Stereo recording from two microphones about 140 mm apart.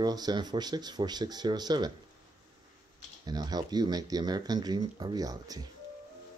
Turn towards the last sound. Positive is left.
turn(degrees=-25)  # may be behind; listen again after turning